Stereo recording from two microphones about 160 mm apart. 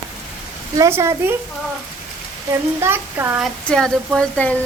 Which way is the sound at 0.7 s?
20° right (ahead or behind).